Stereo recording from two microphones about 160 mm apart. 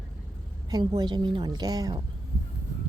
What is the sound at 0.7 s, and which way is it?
A woman's voice, 25° right (ahead or behind).